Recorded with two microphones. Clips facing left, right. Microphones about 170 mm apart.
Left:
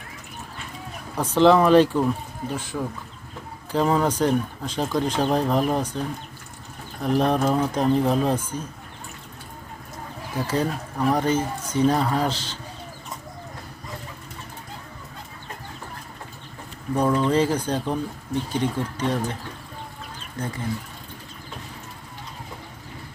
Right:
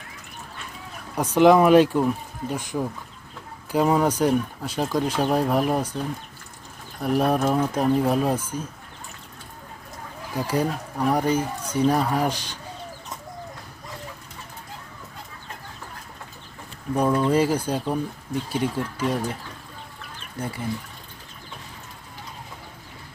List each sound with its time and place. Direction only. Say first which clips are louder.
1.4 s speech: right 1 dB; 10° right (ahead or behind)
10.3 s speech: even; 10° right (ahead or behind)
17.2 s speech: even; 10° right (ahead or behind)